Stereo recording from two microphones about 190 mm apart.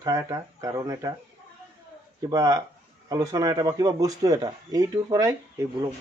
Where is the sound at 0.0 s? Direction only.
15° right (ahead or behind).